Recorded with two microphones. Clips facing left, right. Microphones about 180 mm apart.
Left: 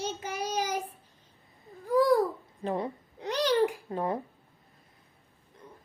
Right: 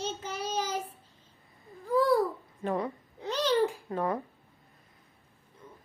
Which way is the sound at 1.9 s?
15° left (ahead or behind).